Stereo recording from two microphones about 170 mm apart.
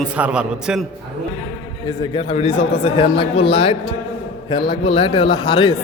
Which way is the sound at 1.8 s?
30° left (ahead or behind).